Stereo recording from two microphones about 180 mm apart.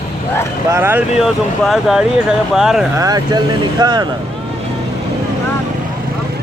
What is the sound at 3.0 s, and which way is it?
Speech, 20° right (ahead or behind).